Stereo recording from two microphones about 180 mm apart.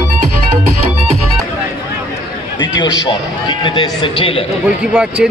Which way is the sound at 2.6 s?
25° left (ahead or behind).